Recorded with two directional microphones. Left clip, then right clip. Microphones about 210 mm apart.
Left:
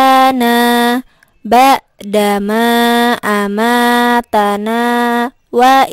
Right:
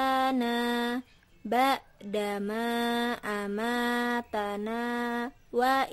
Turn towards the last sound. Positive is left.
turn(degrees=45)  # may be behind; listen again after turning